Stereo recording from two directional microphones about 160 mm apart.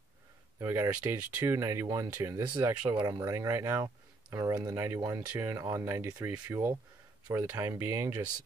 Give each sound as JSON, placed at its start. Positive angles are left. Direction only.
{"t": 0.6, "sound": "speech", "side_deg": -15}
{"t": 2.8, "sound": "speech", "side_deg": -10}